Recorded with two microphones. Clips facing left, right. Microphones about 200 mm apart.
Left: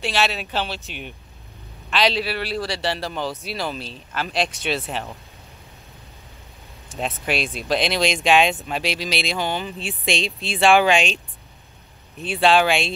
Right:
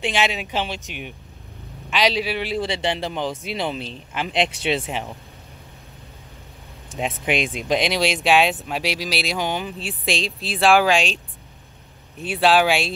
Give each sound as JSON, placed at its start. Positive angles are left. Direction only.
{"t": 0.0, "sound": "speech", "side_deg": -15}
{"t": 7.0, "sound": "speech", "side_deg": -15}
{"t": 9.7, "sound": "speech", "side_deg": 0}
{"t": 12.2, "sound": "speech", "side_deg": -5}